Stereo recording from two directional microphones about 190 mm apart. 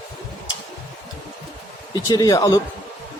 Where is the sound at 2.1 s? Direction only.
20° left (ahead or behind).